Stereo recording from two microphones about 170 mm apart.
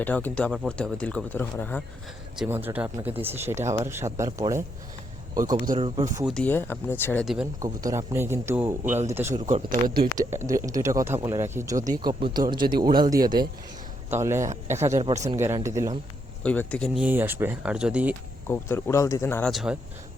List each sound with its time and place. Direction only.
0.0 s speech: 10° left (ahead or behind)
2.4 s a man's voice: 10° right (ahead or behind)
6.2 s speech: 5° left (ahead or behind)
7.6 s speech: 20° right (ahead or behind)
9.3 s speech: 45° right (ahead or behind)
10.4 s speech: 20° right (ahead or behind)
15.0 s speech: 40° right (ahead or behind)
15.5 s speech: 15° right (ahead or behind)
16.4 s speech: 10° left (ahead or behind)
17.0 s speech: 10° right (ahead or behind)
18.4 s speech: 15° left (ahead or behind)
19.4 s speech: centre (ahead or behind)